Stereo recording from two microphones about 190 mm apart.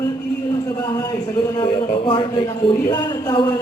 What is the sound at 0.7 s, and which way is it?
A man's voice, 20° left (ahead or behind).